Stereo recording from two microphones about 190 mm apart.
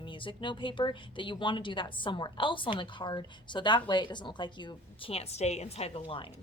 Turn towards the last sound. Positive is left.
turn(degrees=30)  # may be behind; listen again after turning